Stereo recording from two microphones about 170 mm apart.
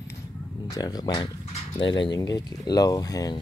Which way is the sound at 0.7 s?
20° left (ahead or behind).